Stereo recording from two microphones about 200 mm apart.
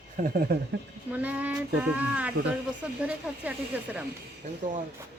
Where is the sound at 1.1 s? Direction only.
10° right (ahead or behind).